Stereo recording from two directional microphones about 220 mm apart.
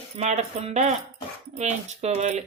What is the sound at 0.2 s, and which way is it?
Speech, 30° right (ahead or behind).